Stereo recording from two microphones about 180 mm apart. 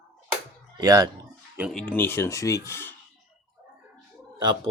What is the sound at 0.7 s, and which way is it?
Speech, 20° right (ahead or behind).